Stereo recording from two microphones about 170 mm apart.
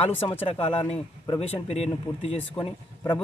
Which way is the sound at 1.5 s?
35° left (ahead or behind).